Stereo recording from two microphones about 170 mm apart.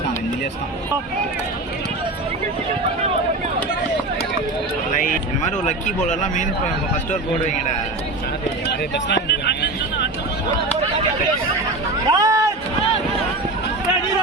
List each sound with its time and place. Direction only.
5.6 s speech: 45° left (ahead or behind)
9.0 s vehicle: 85° left
12.0 s a sound: 20° right (ahead or behind)